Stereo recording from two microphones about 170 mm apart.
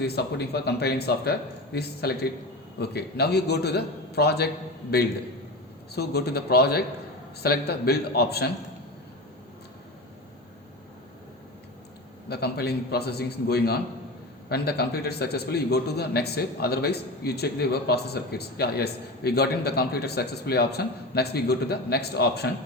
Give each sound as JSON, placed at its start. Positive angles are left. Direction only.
{"t": 0.0, "sound": "a man's voice", "side_deg": 75}
{"t": 5.9, "sound": "a man's voice", "side_deg": 70}
{"t": 12.3, "sound": "a man's voice", "side_deg": 70}